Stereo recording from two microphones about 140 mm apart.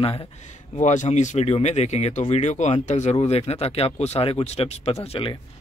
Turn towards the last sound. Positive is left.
turn(degrees=40)  # may be behind; listen again after turning